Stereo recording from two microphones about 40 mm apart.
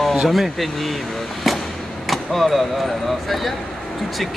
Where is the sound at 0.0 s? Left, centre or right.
Centre.